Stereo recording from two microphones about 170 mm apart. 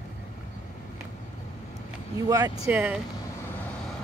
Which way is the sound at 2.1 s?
20° right (ahead or behind).